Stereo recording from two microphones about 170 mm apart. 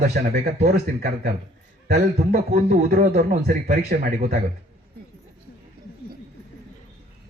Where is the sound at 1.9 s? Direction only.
55° right (ahead or behind).